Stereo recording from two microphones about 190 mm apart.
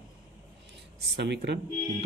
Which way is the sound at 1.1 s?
65° right (ahead or behind).